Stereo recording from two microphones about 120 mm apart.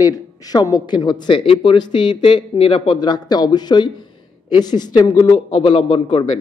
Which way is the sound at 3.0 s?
35° left (ahead or behind).